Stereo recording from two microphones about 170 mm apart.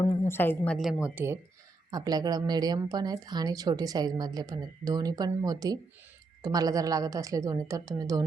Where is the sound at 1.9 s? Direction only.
25° right (ahead or behind).